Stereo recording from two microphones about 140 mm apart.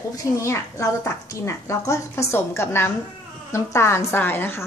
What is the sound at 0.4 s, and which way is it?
A woman's voice, 20° left (ahead or behind).